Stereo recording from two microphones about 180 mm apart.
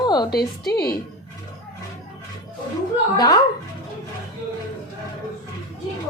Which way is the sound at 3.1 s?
20° left (ahead or behind).